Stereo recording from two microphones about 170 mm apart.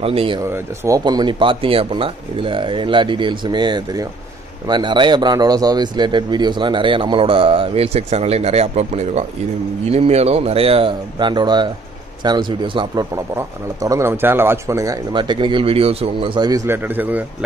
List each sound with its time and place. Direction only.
0.0 s speech: 35° right (ahead or behind)
0.5 s a man's voice: 20° right (ahead or behind)
13.1 s a man's voice: 15° right (ahead or behind)